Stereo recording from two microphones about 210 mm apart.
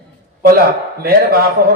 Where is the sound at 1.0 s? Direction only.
45° right (ahead or behind).